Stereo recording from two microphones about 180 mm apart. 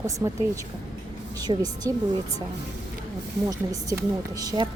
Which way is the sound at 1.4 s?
20° right (ahead or behind).